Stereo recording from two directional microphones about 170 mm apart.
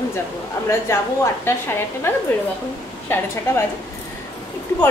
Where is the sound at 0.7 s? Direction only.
15° left (ahead or behind).